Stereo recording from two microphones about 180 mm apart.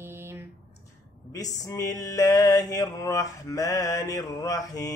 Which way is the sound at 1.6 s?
20° left (ahead or behind).